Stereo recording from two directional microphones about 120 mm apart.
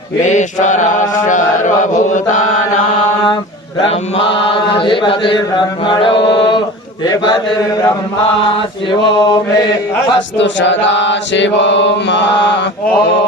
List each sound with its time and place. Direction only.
0.3 s chant: 90° left
3.8 s chant: 50° left (ahead or behind)